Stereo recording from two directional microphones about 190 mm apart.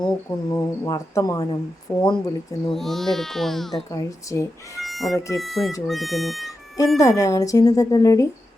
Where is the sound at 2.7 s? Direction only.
Centre (ahead or behind).